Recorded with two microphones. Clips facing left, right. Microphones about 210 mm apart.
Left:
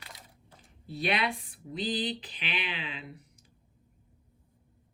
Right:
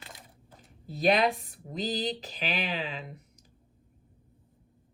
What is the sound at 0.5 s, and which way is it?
Speech, 40° right (ahead or behind).